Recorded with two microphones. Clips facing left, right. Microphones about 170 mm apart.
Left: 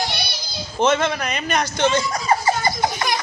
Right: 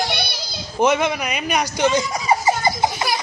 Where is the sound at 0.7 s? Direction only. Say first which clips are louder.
Right 1 dB; 15° right (ahead or behind).